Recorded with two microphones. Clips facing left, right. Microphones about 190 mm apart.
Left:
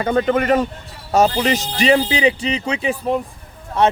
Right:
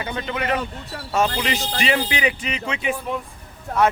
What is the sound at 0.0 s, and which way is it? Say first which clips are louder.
Speech: left 10 dB; 50° left (ahead or behind).